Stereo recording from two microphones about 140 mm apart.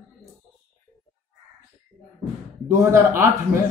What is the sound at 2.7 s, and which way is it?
Speech, 20° right (ahead or behind).